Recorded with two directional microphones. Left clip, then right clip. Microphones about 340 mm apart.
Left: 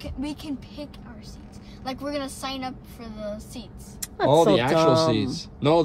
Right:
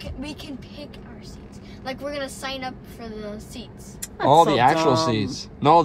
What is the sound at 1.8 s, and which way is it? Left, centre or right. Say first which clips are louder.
A woman's voice: right 1 dB; centre.